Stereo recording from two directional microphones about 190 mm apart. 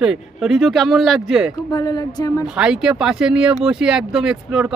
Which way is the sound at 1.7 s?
20° left (ahead or behind).